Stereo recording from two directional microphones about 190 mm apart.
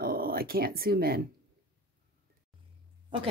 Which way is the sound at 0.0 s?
50° right (ahead or behind).